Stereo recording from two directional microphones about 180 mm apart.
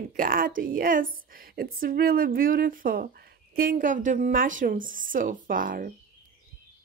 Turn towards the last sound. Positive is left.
turn(degrees=-50)  # may be behind; listen again after turning